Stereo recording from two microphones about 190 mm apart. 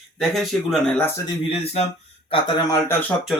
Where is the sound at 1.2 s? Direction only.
30° left (ahead or behind).